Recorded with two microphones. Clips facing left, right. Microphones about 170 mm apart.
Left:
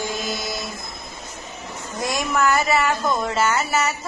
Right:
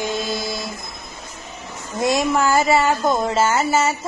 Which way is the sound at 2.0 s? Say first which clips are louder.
Right 4 dB; 25° right (ahead or behind).